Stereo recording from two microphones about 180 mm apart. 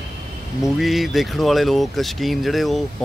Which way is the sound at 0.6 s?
Centre (ahead or behind).